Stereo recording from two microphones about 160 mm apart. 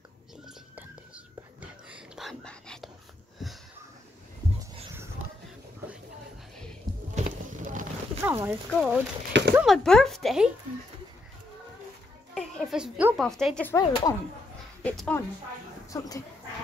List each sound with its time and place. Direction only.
0.7 s whispering: 10° right (ahead or behind)
7.2 s boat: 45° right (ahead or behind)
8.2 s speech: 15° right (ahead or behind)
8.7 s speech: 5° right (ahead or behind)
9.8 s speech: 5° left (ahead or behind)
12.4 s a woman's voice: centre (ahead or behind)
13.7 s speech: 20° left (ahead or behind)
14.8 s speech: 10° left (ahead or behind)
15.9 s speech: 20° left (ahead or behind)